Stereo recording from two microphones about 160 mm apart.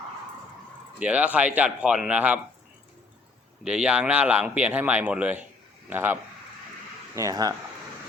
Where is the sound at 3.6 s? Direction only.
5° right (ahead or behind); by 7.5 s 20° right (ahead or behind).